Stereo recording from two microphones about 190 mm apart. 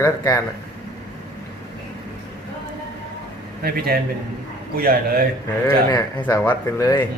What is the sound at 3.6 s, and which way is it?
Speech, 55° right (ahead or behind).